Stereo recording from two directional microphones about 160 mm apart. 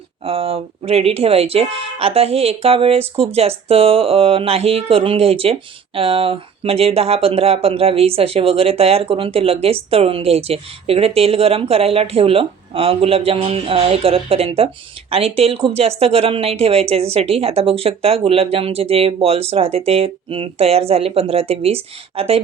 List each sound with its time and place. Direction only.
0.3 s speech: 35° right (ahead or behind)